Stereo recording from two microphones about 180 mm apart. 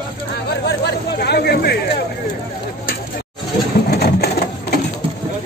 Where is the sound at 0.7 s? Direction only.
65° left (ahead or behind).